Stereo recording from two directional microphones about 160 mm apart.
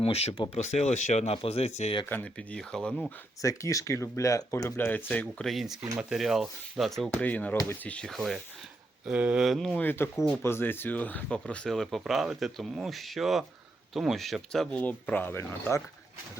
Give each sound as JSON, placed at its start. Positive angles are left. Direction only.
{"t": 0.0, "sound": "speech", "side_deg": 40}
{"t": 2.0, "sound": "speech", "side_deg": 10}
{"t": 3.4, "sound": "speech", "side_deg": 20}
{"t": 7.5, "sound": "speech", "side_deg": 20}
{"t": 7.9, "sound": "speech", "side_deg": 5}
{"t": 10.2, "sound": "speech", "side_deg": 0}
{"t": 10.4, "sound": "speech", "side_deg": 15}